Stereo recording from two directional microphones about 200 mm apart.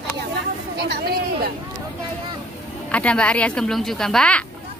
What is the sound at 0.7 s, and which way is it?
Speech, 50° right (ahead or behind).